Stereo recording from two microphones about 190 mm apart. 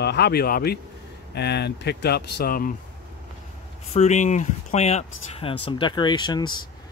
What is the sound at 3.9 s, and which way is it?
Speech, 40° left (ahead or behind).